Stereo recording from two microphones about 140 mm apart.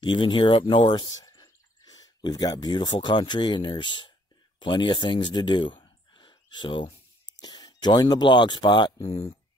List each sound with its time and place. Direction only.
0.0 s speech: 35° left (ahead or behind)
9.0 s speech: 45° left (ahead or behind)